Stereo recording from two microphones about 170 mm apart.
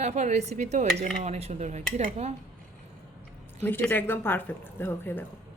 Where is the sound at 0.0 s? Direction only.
40° right (ahead or behind).